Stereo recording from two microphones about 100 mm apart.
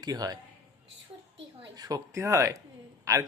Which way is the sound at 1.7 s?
40° right (ahead or behind).